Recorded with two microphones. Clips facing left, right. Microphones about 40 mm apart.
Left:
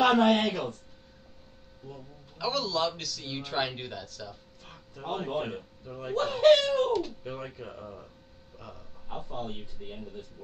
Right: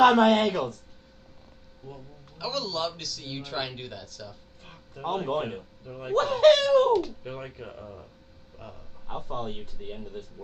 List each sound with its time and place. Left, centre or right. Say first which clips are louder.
0.0 s speech: right 4 dB; right
2.0 s a sound: left 2 dB; centre
3.0 s speech: even; centre
5.0 s speech: right 4 dB; right
6.1 s speech: right 2 dB; right
7.2 s speech: right 1 dB; centre
7.8 s speech: even; centre
8.5 s speech: right 2 dB; centre
9.2 s speech: right 3 dB; right